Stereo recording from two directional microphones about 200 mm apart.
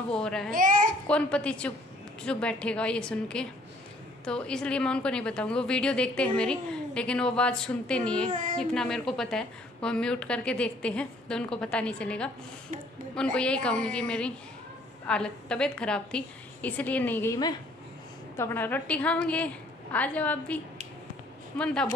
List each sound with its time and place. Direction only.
0.1 s a woman's voice: 5° left (ahead or behind)
0.5 s a child's voice: 40° right (ahead or behind)
1.0 s a woman's voice: 5° left (ahead or behind)
8.3 s speech: 40° right (ahead or behind)
8.5 s a woman's voice: 5° left (ahead or behind)